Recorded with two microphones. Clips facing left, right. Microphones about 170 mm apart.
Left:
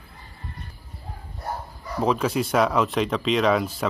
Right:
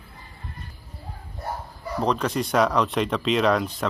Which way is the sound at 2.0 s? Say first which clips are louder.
Left 1 dB; 5° left (ahead or behind).